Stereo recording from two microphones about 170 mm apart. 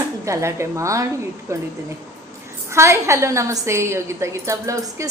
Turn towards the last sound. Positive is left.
turn(degrees=-20)  # may be behind; listen again after turning